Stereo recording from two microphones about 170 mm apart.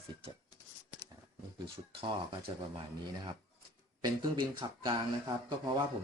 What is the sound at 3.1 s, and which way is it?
Speech, 25° right (ahead or behind).